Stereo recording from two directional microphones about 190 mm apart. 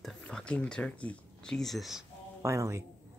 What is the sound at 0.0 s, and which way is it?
Speech, 5° left (ahead or behind).